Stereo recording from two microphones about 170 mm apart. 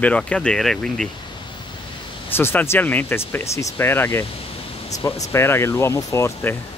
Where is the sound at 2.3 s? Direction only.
15° left (ahead or behind).